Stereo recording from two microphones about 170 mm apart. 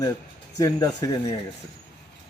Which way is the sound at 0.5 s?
20° left (ahead or behind).